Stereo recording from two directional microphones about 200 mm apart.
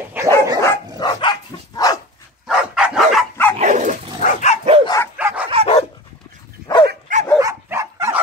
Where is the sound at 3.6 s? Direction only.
40° right (ahead or behind).